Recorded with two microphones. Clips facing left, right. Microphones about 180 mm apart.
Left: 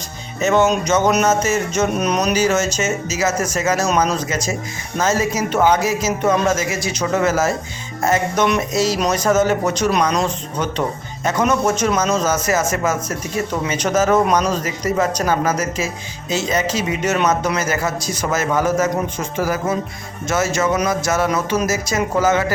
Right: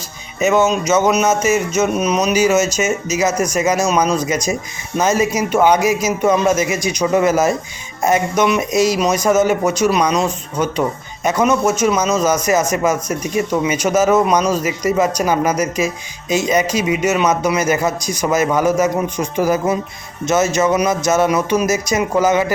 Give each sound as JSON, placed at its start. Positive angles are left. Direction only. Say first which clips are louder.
{"t": 0.3, "sound": "a man's voice", "louder": "right 1 dB", "side_deg": -10}